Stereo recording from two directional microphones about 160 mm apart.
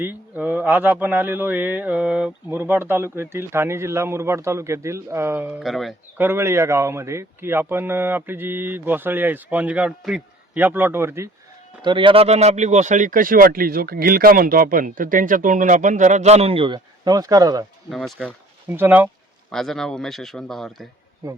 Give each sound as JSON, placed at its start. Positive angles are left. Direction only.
{"t": 0.0, "sound": "speech", "side_deg": -10}
{"t": 5.6, "sound": "speech", "side_deg": 0}
{"t": 6.1, "sound": "speech", "side_deg": -15}
{"t": 11.8, "sound": "speech", "side_deg": -30}
{"t": 17.9, "sound": "speech", "side_deg": -5}
{"t": 19.5, "sound": "speech", "side_deg": 0}
{"t": 21.2, "sound": "speech", "side_deg": -20}